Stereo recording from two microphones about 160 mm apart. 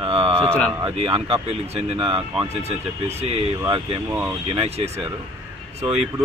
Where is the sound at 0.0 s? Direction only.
35° right (ahead or behind).